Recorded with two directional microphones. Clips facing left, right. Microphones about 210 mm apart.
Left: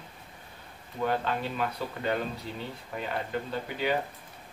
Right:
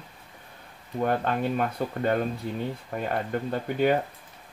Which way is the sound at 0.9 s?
50° right (ahead or behind).